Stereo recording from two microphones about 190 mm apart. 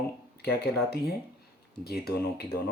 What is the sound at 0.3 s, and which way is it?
Speech, 55° left (ahead or behind).